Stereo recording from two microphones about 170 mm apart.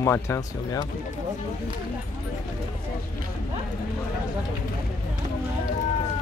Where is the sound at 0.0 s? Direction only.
15° left (ahead or behind).